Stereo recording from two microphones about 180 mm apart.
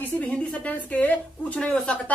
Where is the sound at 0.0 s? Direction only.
10° left (ahead or behind).